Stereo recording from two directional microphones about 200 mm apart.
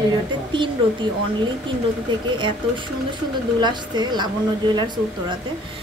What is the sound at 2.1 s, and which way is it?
Speech, 25° right (ahead or behind).